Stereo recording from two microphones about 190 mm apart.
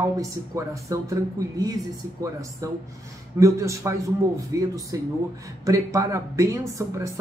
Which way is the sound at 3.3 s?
15° right (ahead or behind).